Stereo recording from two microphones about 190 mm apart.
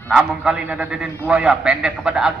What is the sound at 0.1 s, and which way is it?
A man's voice, centre (ahead or behind).